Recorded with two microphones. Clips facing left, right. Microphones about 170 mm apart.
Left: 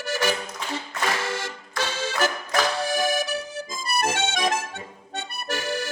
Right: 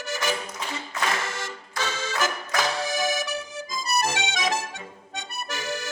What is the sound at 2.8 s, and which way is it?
Accordion, 55° left (ahead or behind).